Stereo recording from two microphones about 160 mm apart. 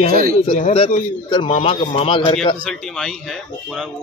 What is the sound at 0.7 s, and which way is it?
A man's voice, 30° left (ahead or behind).